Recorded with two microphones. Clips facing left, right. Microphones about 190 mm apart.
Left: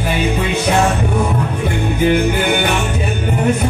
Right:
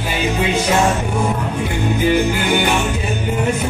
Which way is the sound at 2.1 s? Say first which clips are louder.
Left 1 dB; 55° left (ahead or behind).